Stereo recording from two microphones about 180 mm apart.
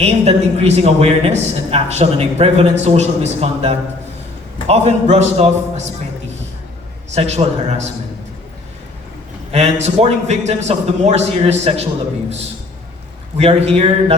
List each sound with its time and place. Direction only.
0.0 s a man's voice: 35° right (ahead or behind)
7.1 s a man's voice: 35° right (ahead or behind)
9.5 s a man's voice: 35° right (ahead or behind)
13.4 s a man's voice: 35° right (ahead or behind)